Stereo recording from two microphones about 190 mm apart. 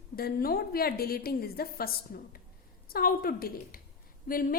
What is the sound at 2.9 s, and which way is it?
A woman's voice, 50° left (ahead or behind).